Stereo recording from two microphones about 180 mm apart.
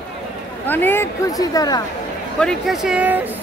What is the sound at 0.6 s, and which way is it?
Speech, 10° left (ahead or behind).